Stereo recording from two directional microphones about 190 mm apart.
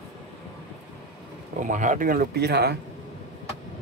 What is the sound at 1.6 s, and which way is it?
Speech, 40° right (ahead or behind).